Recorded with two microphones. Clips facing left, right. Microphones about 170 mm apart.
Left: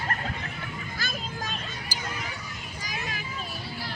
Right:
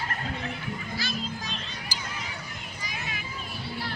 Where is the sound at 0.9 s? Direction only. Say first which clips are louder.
Right 2 dB; 50° left (ahead or behind).